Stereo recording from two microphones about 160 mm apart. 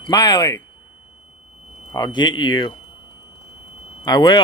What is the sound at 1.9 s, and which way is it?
Speech, 25° left (ahead or behind).